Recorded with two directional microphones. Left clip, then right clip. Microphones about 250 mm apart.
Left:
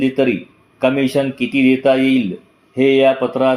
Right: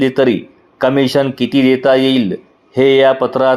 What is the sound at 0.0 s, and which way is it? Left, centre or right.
Speech, centre.